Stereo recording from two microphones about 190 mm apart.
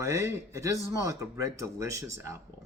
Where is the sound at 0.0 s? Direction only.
15° right (ahead or behind).